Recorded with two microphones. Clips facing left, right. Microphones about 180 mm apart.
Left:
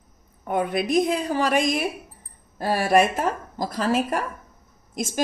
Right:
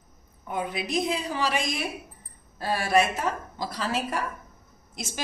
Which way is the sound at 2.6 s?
40° left (ahead or behind).